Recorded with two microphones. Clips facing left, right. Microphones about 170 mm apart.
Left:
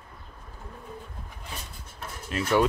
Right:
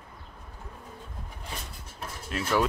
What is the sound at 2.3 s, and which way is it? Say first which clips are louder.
Speech: left 3 dB; centre (ahead or behind).